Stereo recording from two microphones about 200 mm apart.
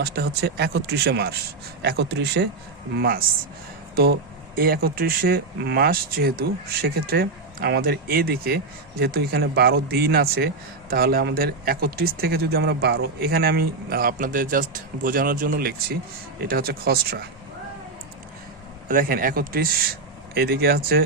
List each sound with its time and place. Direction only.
0.0 s speech: 55° right (ahead or behind)
18.9 s speech: 45° right (ahead or behind)